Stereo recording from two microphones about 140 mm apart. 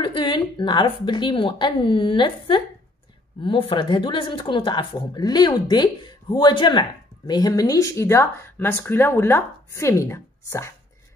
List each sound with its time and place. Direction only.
0.0 s a woman's voice: 35° left (ahead or behind); by 10.7 s 20° left (ahead or behind)